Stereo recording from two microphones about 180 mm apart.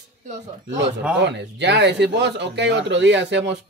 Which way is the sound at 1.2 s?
75° right (ahead or behind).